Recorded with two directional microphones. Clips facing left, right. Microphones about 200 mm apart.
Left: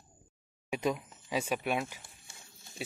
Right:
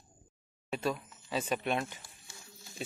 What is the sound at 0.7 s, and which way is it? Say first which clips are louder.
Speech: left 2 dB; 15° left (ahead or behind).